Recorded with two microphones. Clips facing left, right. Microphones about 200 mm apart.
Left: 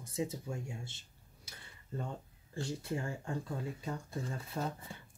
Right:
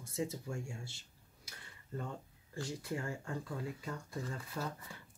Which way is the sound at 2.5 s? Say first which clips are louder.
Left 2 dB; 25° left (ahead or behind).